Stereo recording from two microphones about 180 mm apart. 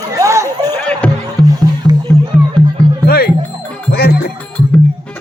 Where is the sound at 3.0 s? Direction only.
60° left (ahead or behind).